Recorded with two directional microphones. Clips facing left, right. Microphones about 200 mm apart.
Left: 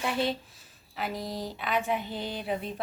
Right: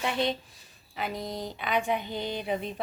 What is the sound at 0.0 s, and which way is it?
Speech, 5° left (ahead or behind).